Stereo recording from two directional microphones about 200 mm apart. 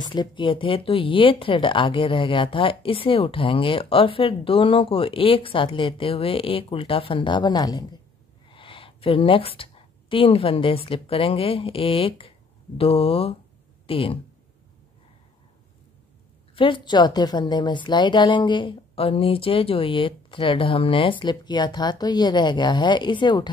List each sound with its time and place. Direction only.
0.0 s a woman's voice: 20° left (ahead or behind)
16.5 s speech: 25° left (ahead or behind)